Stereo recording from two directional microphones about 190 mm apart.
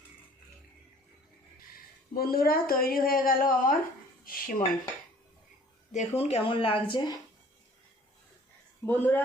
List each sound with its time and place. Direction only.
2.1 s a woman's voice: 50° left (ahead or behind)
5.9 s speech: 35° left (ahead or behind)
8.9 s speech: 10° left (ahead or behind)